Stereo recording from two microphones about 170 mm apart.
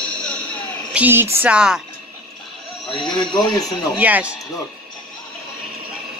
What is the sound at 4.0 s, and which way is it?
Speech, 10° right (ahead or behind).